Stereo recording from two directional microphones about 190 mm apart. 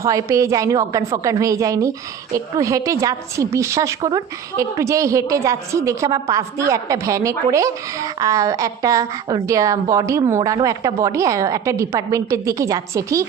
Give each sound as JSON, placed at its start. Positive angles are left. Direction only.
{"t": 0.0, "sound": "a woman's voice", "side_deg": -15}